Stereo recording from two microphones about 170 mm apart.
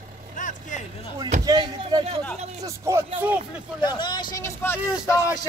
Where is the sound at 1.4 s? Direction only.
25° right (ahead or behind).